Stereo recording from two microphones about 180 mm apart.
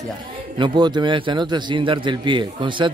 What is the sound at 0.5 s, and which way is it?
A man's voice, 25° right (ahead or behind).